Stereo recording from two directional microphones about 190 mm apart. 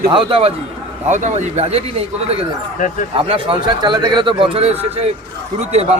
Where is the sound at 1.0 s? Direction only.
40° right (ahead or behind).